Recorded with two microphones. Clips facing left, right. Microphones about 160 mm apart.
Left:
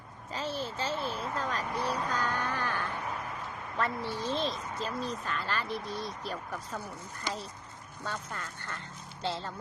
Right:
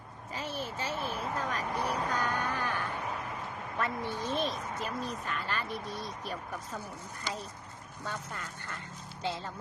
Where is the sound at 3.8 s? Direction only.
15° right (ahead or behind).